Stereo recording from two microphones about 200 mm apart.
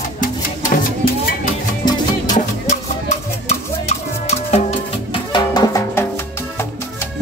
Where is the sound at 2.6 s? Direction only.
35° left (ahead or behind); by 6.1 s 20° left (ahead or behind).